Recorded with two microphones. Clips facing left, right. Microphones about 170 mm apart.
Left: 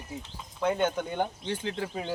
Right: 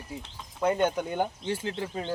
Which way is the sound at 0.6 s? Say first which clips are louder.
Right 2 dB; 5° right (ahead or behind).